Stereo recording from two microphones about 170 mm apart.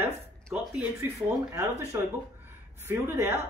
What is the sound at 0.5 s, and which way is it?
Speech, 15° right (ahead or behind).